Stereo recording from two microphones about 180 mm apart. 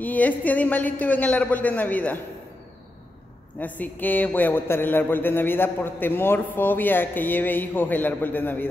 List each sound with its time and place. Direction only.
0.0 s a man's voice: 10° left (ahead or behind)
3.5 s a man's voice: 10° left (ahead or behind)